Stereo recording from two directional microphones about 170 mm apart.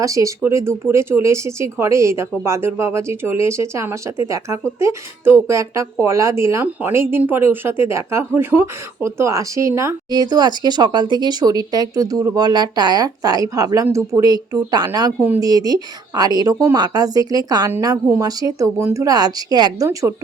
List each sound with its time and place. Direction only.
0.0 s speech: 20° right (ahead or behind)